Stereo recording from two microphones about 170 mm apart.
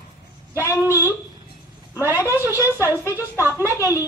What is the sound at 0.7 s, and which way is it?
A woman's voice, 15° right (ahead or behind).